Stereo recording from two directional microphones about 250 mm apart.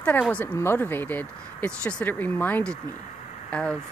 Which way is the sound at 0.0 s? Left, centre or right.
Centre.